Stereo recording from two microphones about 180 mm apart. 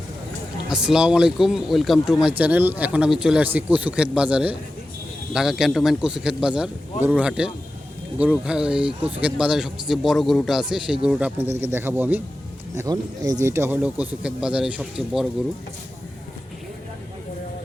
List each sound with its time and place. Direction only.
0.7 s a man's voice: 5° right (ahead or behind)